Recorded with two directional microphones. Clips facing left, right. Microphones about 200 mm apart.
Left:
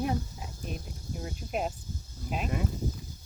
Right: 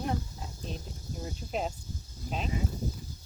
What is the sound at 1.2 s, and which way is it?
Speech, 5° left (ahead or behind).